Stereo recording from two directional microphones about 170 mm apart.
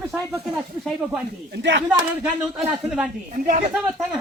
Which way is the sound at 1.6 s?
90° right.